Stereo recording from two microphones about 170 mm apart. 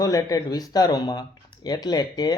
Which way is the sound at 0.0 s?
20° left (ahead or behind).